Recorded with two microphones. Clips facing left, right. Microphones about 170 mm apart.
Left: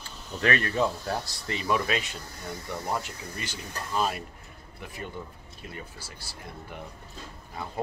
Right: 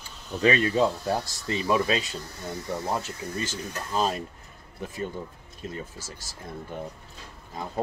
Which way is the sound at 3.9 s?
25° right (ahead or behind).